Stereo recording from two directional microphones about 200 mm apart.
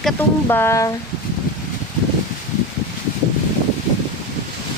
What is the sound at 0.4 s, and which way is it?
Speech, 10° left (ahead or behind).